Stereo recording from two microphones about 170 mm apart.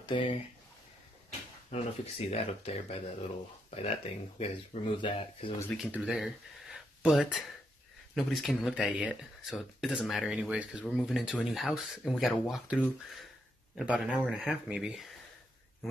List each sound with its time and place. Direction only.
0.0 s speech: 30° left (ahead or behind)
1.7 s speech: 35° left (ahead or behind)
5.8 s speech: 5° right (ahead or behind)